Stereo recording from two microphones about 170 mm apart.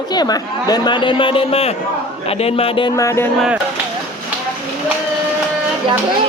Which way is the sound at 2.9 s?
20° left (ahead or behind).